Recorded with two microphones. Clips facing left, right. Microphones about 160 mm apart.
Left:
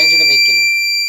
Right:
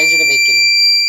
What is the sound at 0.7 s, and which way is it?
Fire alarm, 20° left (ahead or behind).